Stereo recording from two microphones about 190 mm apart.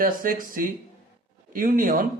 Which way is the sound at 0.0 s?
45° right (ahead or behind).